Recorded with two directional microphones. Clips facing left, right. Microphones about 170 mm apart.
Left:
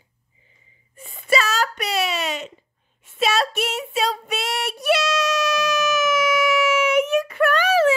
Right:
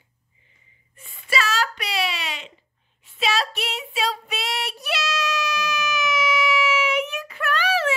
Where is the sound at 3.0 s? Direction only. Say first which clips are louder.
Left 3 dB; 50° left (ahead or behind).